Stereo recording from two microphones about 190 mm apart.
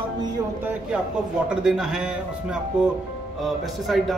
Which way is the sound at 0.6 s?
10° right (ahead or behind).